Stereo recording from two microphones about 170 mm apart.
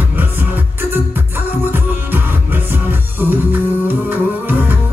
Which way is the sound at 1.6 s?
10° right (ahead or behind).